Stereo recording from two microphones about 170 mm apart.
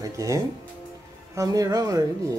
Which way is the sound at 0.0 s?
20° right (ahead or behind).